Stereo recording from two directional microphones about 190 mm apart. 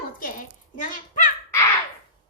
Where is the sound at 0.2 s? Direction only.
45° left (ahead or behind).